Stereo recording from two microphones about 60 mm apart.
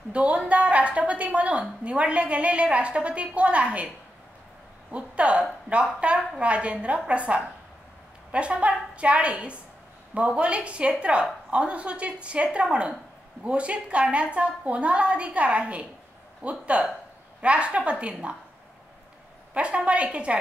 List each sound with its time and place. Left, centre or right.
0.1 s a woman's voice: centre
4.9 s a woman's voice: centre
19.5 s a woman's voice: centre